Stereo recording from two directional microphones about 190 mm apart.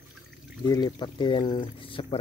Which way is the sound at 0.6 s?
20° left (ahead or behind).